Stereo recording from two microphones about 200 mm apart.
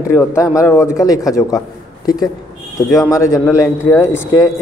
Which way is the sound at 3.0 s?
15° left (ahead or behind).